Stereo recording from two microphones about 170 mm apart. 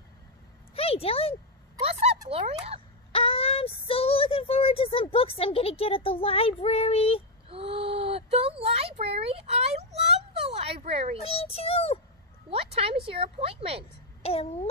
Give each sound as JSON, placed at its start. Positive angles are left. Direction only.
{"t": 0.7, "sound": "a child's voice", "side_deg": 35}
{"t": 1.8, "sound": "speech", "side_deg": -35}
{"t": 3.1, "sound": "speech", "side_deg": 35}
{"t": 7.4, "sound": "a sound", "side_deg": -35}
{"t": 11.2, "sound": "speech", "side_deg": 35}
{"t": 12.4, "sound": "speech", "side_deg": -35}
{"t": 14.2, "sound": "speech", "side_deg": 35}